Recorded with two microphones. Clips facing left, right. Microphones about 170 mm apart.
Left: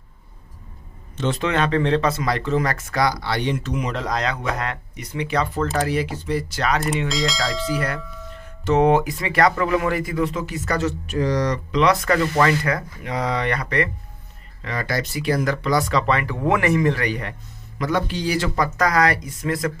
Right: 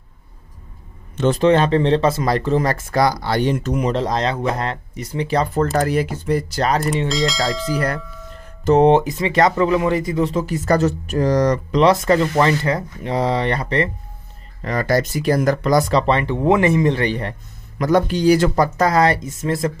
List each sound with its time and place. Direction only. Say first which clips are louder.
1.1 s a man's voice: right 6 dB; 50° right (ahead or behind)
1.4 s speech: right 6 dB; 35° right (ahead or behind)
3.9 s speech: right 5 dB; 30° right (ahead or behind)
7.1 s speech: right 4 dB; centre (ahead or behind)
8.6 s speech: right 4 dB; 30° right (ahead or behind)
11.9 s speech: right 4 dB; 25° right (ahead or behind)
14.6 s speech: right 7 dB; 40° right (ahead or behind)
17.7 s speech: right 6 dB; 45° right (ahead or behind)
18.8 s speech: right 2 dB; 30° right (ahead or behind)